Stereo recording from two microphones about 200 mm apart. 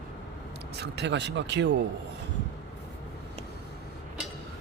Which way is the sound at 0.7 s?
55° right (ahead or behind).